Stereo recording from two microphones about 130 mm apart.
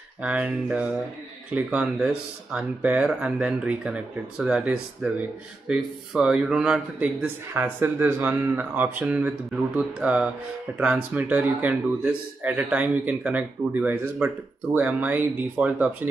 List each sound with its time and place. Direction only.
0.2 s a man's voice: 10° right (ahead or behind)